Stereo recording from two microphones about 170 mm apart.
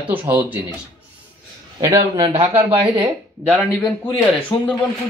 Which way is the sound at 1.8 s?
20° right (ahead or behind).